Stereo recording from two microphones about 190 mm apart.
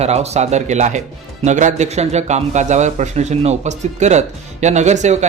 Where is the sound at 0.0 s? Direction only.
35° right (ahead or behind).